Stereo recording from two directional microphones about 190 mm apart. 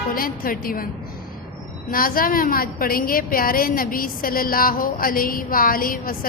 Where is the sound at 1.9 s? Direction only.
50° left (ahead or behind).